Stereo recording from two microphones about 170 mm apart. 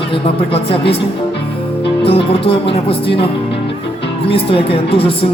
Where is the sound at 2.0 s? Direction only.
35° left (ahead or behind).